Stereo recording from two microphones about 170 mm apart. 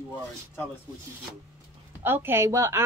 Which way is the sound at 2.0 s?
10° right (ahead or behind).